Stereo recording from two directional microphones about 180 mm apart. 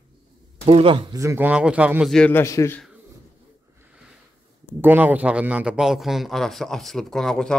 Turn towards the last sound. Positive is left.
turn(degrees=5)  # may be behind; listen again after turning